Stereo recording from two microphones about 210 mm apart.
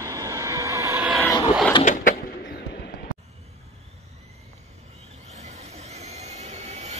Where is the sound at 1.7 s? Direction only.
25° left (ahead or behind).